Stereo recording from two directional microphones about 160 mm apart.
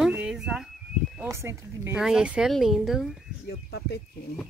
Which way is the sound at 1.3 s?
15° right (ahead or behind).